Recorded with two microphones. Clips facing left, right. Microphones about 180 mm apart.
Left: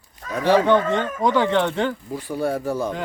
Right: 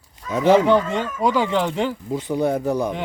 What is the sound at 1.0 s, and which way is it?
Speech, 10° right (ahead or behind).